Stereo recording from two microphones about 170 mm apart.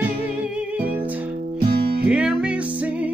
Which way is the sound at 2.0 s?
5° right (ahead or behind).